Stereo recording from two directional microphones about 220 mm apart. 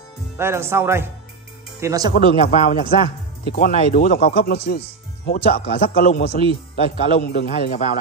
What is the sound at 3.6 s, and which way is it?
A man's voice, 40° left (ahead or behind).